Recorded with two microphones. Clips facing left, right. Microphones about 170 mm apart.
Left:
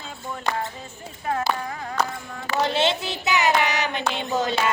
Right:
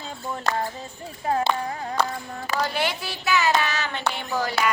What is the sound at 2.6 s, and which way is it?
Child singing, 25° left (ahead or behind).